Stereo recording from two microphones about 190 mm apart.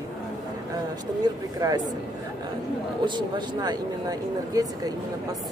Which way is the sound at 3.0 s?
25° right (ahead or behind).